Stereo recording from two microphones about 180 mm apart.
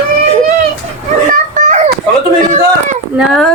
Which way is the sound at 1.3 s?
45° right (ahead or behind).